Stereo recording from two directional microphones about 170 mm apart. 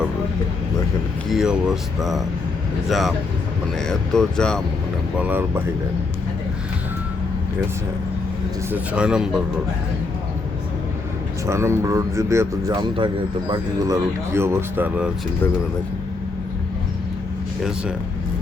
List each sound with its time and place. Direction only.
1.3 s speech: 5° right (ahead or behind)
3.8 s speech: 5° left (ahead or behind)
5.1 s speech: 10° right (ahead or behind)
8.7 s speech: 5° right (ahead or behind)
11.4 s speech: 15° right (ahead or behind)
17.6 s speech: 5° right (ahead or behind)